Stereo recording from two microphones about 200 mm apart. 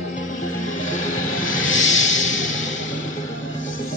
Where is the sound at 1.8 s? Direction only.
35° left (ahead or behind).